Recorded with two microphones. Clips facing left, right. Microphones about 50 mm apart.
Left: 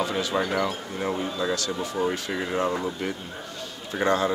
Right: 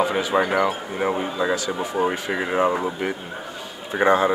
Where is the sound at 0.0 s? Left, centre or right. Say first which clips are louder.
Right 5 dB; centre.